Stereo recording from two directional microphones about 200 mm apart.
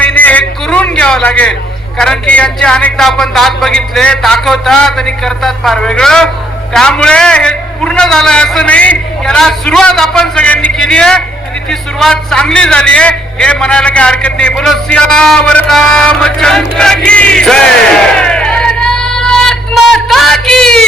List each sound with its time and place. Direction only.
0.0 s music: 10° left (ahead or behind)
2.0 s a man's voice: 5° left (ahead or behind)